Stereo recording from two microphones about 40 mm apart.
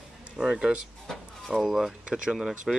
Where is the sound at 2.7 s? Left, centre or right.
Centre.